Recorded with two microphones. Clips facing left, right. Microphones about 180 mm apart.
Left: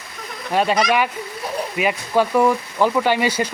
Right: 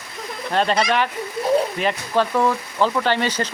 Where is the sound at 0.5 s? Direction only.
10° left (ahead or behind).